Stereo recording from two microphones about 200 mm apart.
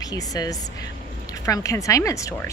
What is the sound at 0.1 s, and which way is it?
A woman's voice, 20° left (ahead or behind).